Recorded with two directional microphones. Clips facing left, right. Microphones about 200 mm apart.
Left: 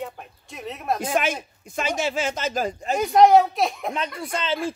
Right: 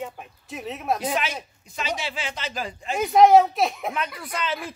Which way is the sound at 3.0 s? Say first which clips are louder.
Even; centre (ahead or behind).